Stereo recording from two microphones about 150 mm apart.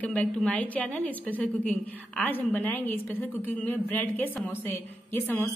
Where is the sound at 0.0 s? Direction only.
5° left (ahead or behind).